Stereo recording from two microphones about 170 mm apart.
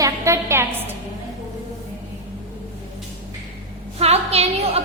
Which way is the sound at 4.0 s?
40° right (ahead or behind).